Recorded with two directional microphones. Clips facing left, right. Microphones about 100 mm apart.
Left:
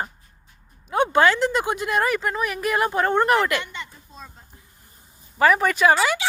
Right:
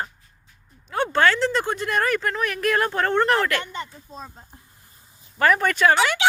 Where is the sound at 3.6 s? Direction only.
40° right (ahead or behind).